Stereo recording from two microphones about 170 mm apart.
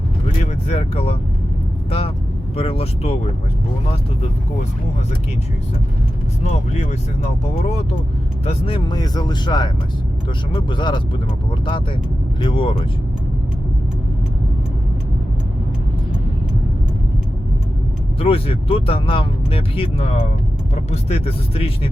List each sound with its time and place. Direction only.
0.7 s speech: 35° left (ahead or behind)
6.4 s speech: 40° left (ahead or behind)
12.4 s speech: 30° left (ahead or behind)
18.2 s speech: 35° left (ahead or behind)